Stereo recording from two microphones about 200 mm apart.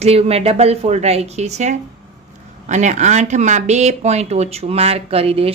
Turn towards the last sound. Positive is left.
turn(degrees=-30)  # may be behind; listen again after turning